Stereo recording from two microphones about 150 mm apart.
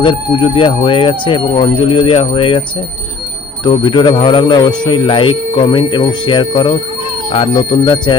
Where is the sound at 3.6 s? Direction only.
30° left (ahead or behind).